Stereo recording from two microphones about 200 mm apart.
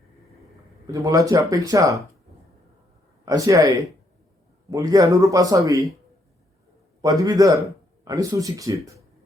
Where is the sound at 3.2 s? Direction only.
15° right (ahead or behind).